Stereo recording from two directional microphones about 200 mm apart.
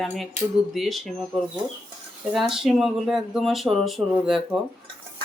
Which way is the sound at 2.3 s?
Centre (ahead or behind).